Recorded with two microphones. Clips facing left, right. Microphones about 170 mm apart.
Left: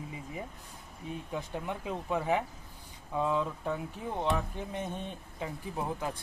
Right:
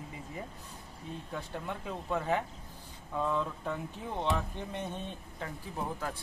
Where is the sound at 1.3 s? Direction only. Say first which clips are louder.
Left 2 dB; 15° left (ahead or behind).